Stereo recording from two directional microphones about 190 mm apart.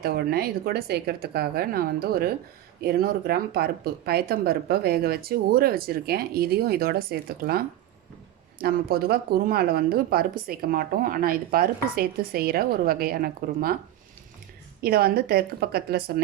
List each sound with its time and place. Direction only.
0.0 s speech: 55° right (ahead or behind)
14.8 s a woman's voice: 55° right (ahead or behind)